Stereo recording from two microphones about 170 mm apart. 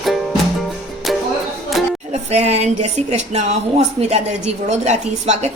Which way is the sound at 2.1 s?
40° right (ahead or behind).